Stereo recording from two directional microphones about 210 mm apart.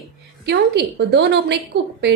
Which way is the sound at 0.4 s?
55° right (ahead or behind).